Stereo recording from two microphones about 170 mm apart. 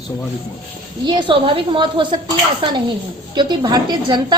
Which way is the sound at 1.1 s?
30° right (ahead or behind).